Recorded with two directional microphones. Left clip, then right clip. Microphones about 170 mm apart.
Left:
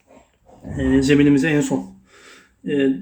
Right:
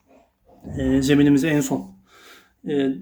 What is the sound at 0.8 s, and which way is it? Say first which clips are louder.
Speech: left 2 dB; 20° right (ahead or behind).